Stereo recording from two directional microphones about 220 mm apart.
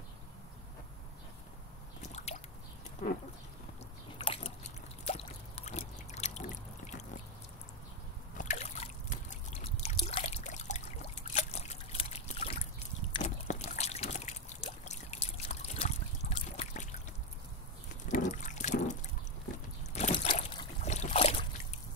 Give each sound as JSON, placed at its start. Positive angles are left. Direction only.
{"t": 2.0, "sound": "drip", "side_deg": 30}
{"t": 4.2, "sound": "biting", "side_deg": 25}
{"t": 5.0, "sound": "a sound", "side_deg": 30}
{"t": 8.4, "sound": "trickle", "side_deg": 35}
{"t": 18.0, "sound": "a sound", "side_deg": 35}
{"t": 19.9, "sound": "boat", "side_deg": 30}